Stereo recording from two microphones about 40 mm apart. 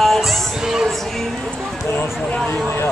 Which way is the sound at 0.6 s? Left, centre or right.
Centre.